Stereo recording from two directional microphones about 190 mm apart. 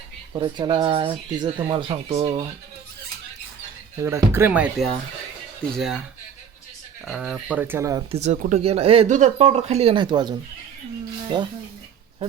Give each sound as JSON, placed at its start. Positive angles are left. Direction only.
{"t": 0.3, "sound": "speech", "side_deg": -25}
{"t": 4.0, "sound": "speech", "side_deg": -15}
{"t": 7.0, "sound": "speech", "side_deg": 0}
{"t": 8.1, "sound": "speech", "side_deg": -35}